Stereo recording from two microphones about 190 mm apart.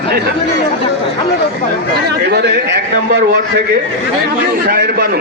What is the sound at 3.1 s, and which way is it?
Speech, 60° right (ahead or behind).